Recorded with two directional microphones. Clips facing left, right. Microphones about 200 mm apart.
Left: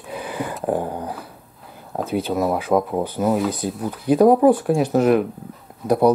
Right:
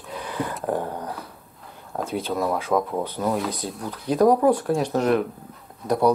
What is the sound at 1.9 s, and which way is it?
Speech, centre (ahead or behind).